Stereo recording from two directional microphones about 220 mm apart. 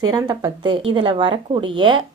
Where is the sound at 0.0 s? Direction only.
20° right (ahead or behind).